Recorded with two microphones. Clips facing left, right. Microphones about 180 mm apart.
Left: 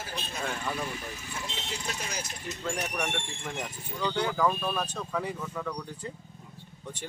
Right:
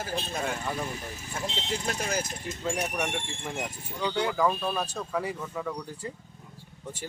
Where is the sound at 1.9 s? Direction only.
50° right (ahead or behind).